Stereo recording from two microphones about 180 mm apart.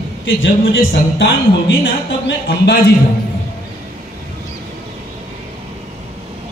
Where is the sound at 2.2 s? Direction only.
70° left (ahead or behind).